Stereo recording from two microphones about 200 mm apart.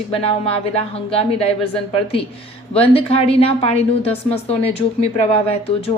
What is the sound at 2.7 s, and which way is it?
Speech, 30° left (ahead or behind).